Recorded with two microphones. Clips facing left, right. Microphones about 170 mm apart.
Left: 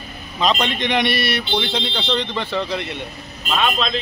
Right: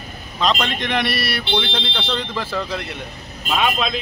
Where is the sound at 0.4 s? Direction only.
Centre (ahead or behind).